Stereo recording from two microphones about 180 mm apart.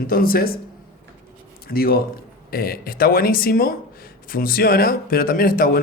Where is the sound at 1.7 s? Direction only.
55° left (ahead or behind).